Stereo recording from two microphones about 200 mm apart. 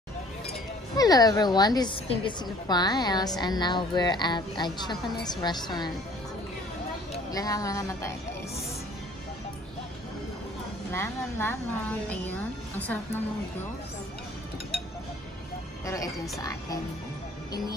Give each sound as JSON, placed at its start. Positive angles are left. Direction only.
{"t": 0.9, "sound": "a woman's voice", "side_deg": 20}
{"t": 7.2, "sound": "a woman's voice", "side_deg": 15}
{"t": 10.9, "sound": "a woman's voice", "side_deg": 10}
{"t": 15.8, "sound": "a woman's voice", "side_deg": 15}